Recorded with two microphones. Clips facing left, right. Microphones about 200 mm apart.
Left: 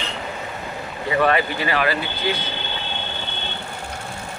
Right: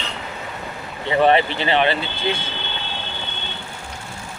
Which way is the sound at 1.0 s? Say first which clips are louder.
Right 3 dB; 25° right (ahead or behind).